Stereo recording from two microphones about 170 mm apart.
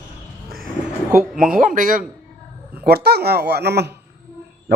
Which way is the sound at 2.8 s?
70° right (ahead or behind).